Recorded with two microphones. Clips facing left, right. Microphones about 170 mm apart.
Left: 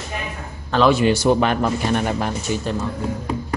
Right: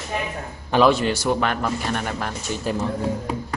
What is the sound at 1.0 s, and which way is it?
Speech, 20° left (ahead or behind).